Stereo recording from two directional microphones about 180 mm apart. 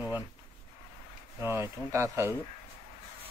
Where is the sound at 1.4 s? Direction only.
15° right (ahead or behind).